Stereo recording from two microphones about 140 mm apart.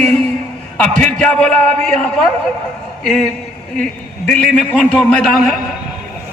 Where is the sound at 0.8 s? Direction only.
5° left (ahead or behind).